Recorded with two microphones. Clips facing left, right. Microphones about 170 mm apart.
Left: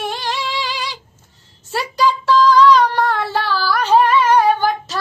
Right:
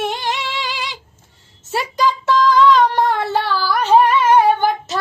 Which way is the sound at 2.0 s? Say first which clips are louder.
Left 2 dB; 20° right (ahead or behind).